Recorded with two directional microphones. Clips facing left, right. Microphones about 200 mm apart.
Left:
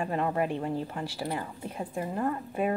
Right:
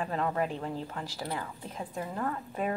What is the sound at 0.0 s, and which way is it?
A woman's voice, 15° left (ahead or behind).